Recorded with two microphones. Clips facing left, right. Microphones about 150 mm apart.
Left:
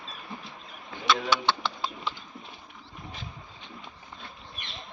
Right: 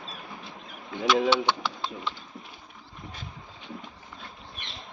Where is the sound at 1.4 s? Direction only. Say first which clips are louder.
Right 1 dB; 15° right (ahead or behind).